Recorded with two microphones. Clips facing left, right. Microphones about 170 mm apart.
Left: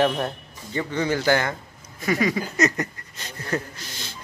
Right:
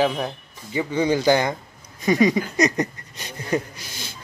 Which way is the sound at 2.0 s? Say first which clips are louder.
Right 5 dB; 20° right (ahead or behind).